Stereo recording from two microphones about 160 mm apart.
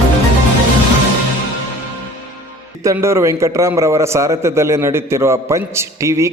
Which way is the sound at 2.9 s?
15° right (ahead or behind).